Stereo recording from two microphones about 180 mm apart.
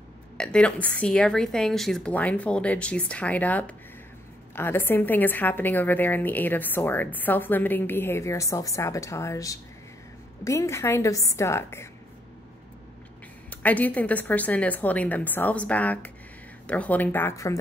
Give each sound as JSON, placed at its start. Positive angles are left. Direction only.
{"t": 0.4, "sound": "a woman's voice", "side_deg": 5}
{"t": 13.5, "sound": "a woman's voice", "side_deg": 10}